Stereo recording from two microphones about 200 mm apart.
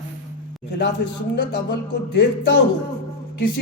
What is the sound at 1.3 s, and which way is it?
Music, 55° left (ahead or behind).